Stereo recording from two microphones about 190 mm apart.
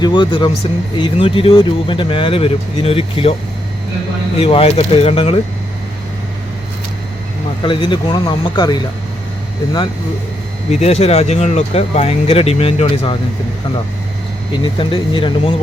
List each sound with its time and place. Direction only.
0.0 s speech: 25° left (ahead or behind)
4.4 s speech: 30° left (ahead or behind)
7.6 s speech: 25° left (ahead or behind)
10.7 s speech: 35° left (ahead or behind)
14.5 s speech: 25° left (ahead or behind)